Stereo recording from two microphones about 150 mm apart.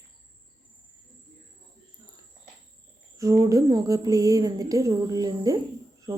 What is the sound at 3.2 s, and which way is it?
A woman's voice, 20° right (ahead or behind).